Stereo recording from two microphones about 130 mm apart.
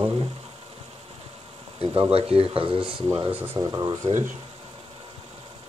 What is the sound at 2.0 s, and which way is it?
Speech, 50° right (ahead or behind).